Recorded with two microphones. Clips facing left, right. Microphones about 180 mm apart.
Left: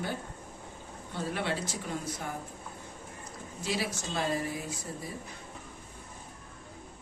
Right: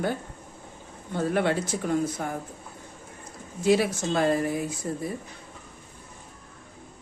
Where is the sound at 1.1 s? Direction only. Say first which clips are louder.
Right 9 dB; 55° right (ahead or behind).